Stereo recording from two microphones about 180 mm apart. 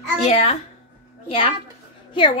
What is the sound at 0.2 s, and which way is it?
Speech, 35° left (ahead or behind).